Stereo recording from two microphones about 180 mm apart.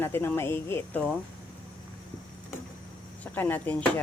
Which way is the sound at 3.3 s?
10° left (ahead or behind).